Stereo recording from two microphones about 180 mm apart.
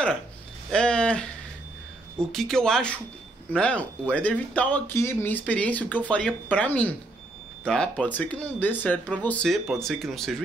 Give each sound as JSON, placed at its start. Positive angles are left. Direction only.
{"t": 0.7, "sound": "speech", "side_deg": 5}
{"t": 2.3, "sound": "speech", "side_deg": 0}